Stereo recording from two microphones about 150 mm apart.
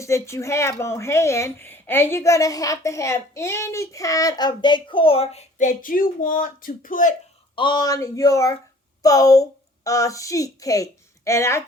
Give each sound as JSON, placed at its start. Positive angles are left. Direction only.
{"t": 0.0, "sound": "speech", "side_deg": 20}
{"t": 7.5, "sound": "speech", "side_deg": 30}